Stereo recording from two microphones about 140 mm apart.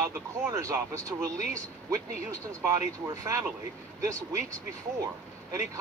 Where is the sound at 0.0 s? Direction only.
20° right (ahead or behind).